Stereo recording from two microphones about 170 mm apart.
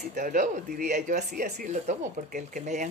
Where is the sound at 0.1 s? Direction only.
50° right (ahead or behind).